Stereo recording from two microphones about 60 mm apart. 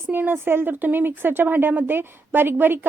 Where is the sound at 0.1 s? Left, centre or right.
Right.